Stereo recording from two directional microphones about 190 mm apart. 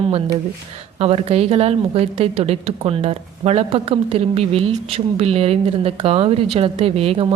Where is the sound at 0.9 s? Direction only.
35° right (ahead or behind).